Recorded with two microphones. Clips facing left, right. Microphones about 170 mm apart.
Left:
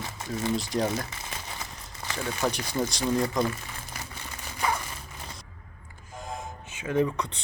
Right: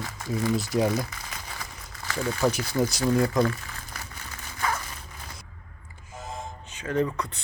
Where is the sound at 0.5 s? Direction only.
5° right (ahead or behind).